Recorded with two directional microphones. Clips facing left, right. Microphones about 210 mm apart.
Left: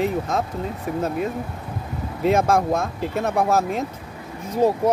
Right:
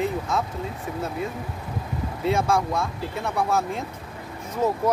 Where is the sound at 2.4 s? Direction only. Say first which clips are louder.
Left 4 dB; 45° left (ahead or behind).